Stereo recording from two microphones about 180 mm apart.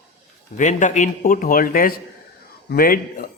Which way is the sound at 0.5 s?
45° left (ahead or behind).